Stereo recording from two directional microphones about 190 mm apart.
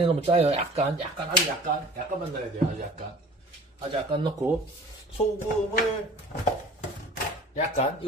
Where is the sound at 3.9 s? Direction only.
25° right (ahead or behind).